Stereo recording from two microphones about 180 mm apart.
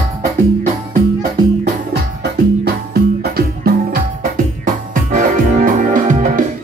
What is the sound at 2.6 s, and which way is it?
Music, 60° right (ahead or behind).